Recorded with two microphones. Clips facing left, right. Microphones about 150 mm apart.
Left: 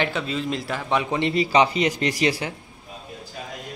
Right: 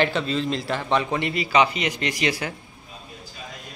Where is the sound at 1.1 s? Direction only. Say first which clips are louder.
Left 4 dB; 30° left (ahead or behind).